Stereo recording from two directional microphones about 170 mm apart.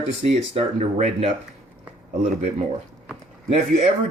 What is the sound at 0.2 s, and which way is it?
Speech, 40° right (ahead or behind).